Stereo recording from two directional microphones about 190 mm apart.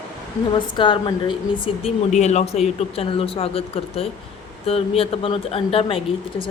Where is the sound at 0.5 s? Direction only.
25° left (ahead or behind).